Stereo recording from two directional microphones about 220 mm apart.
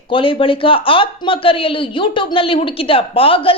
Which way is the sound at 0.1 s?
25° left (ahead or behind).